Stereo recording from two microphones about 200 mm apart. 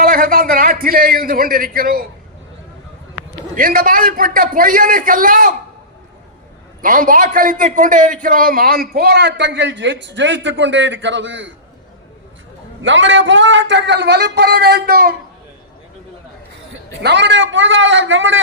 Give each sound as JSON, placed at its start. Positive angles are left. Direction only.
{"t": 0.0, "sound": "a sound", "side_deg": -45}
{"t": 3.5, "sound": "a man's voice", "side_deg": -45}
{"t": 6.8, "sound": "a man's voice", "side_deg": -45}
{"t": 12.8, "sound": "a man's voice", "side_deg": -70}
{"t": 17.0, "sound": "a man's voice", "side_deg": -60}